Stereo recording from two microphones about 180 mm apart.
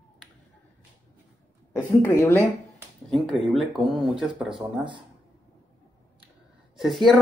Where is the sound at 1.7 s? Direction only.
15° left (ahead or behind).